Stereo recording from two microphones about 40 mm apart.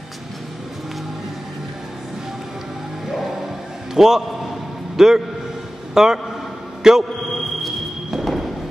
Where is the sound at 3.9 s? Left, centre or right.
Centre.